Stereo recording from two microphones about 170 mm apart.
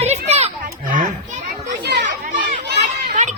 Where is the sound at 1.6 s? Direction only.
80° right.